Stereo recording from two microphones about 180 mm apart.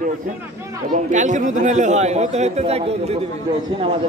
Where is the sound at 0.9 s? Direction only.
45° right (ahead or behind).